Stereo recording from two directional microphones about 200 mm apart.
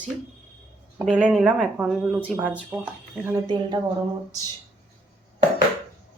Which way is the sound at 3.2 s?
15° right (ahead or behind).